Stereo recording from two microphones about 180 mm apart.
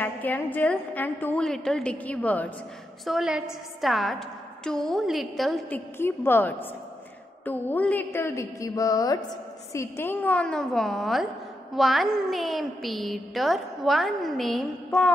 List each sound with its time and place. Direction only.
0.0 s a woman's voice: 10° left (ahead or behind)
3.1 s a woman's voice: 5° right (ahead or behind)
5.9 s a woman's voice: 10° left (ahead or behind)